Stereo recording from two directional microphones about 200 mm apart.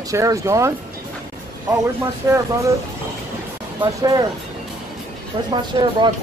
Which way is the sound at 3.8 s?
20° right (ahead or behind).